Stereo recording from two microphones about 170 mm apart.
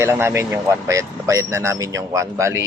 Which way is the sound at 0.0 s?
15° right (ahead or behind).